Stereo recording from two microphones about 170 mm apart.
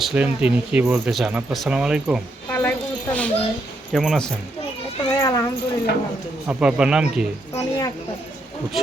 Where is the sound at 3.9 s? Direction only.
Centre (ahead or behind).